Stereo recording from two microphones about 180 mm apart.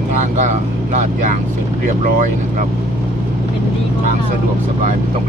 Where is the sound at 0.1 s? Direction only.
40° right (ahead or behind).